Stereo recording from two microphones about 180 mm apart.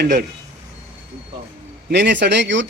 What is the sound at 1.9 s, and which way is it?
Speech, 75° right (ahead or behind).